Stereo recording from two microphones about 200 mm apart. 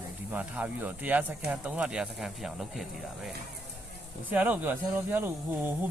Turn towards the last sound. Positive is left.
turn(degrees=-10)  # may be behind; listen again after turning